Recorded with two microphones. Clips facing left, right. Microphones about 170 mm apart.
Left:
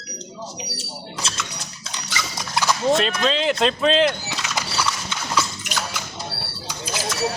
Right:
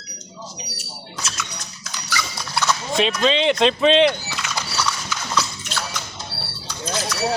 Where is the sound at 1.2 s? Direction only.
30° left (ahead or behind).